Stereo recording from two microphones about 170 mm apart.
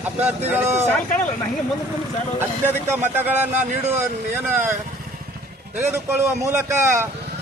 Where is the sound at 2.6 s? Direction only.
10° right (ahead or behind).